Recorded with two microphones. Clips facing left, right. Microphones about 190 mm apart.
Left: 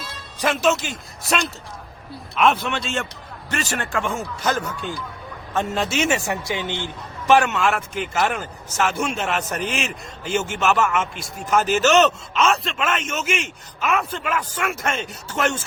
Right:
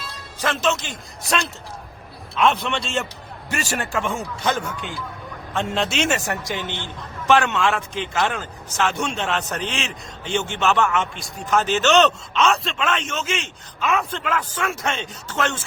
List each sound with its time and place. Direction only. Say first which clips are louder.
0.3 s a man's voice: left 3 dB; 10° left (ahead or behind)
2.4 s speech: left 1 dB; centre (ahead or behind)
5.5 s a man's voice: left 1 dB; 5° left (ahead or behind)